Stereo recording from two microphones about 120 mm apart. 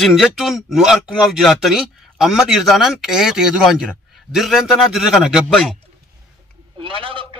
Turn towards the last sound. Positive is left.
turn(degrees=-45)  # may be behind; listen again after turning